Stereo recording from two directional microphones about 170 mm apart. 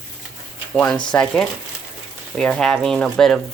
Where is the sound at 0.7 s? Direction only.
5° left (ahead or behind).